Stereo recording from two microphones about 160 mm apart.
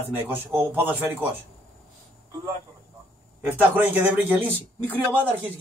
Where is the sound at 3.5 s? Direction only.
10° right (ahead or behind).